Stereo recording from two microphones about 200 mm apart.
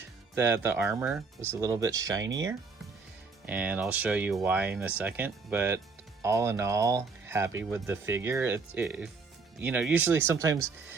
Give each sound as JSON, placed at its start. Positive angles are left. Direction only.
{"t": 0.3, "sound": "speech", "side_deg": -10}
{"t": 3.4, "sound": "speech", "side_deg": -5}